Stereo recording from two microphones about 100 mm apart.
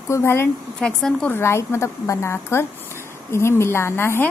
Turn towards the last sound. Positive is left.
turn(degrees=25)  # may be behind; listen again after turning